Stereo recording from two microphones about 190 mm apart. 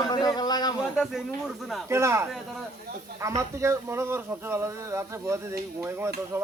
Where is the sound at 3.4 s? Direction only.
15° right (ahead or behind).